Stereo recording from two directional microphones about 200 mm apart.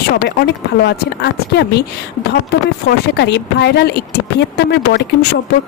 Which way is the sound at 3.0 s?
55° left (ahead or behind).